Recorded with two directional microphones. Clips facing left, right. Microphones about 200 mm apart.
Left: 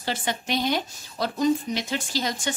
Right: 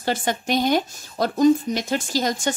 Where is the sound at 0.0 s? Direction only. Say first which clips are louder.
Right 5 dB; 45° right (ahead or behind).